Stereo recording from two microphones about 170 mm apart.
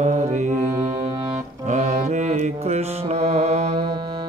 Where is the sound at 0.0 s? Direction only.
45° right (ahead or behind).